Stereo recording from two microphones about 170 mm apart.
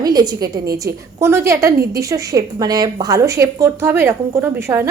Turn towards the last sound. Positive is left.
turn(degrees=-15)  # may be behind; listen again after turning